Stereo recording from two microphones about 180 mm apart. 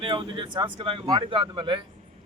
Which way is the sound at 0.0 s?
30° right (ahead or behind).